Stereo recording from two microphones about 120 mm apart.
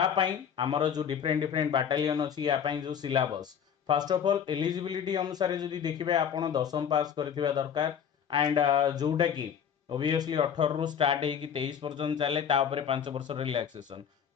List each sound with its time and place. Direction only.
0.2 s a man's voice: 45° right (ahead or behind)